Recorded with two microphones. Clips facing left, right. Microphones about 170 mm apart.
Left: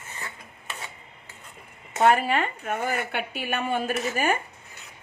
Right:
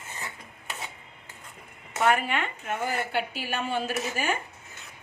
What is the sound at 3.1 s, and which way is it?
A woman's voice, 60° left (ahead or behind).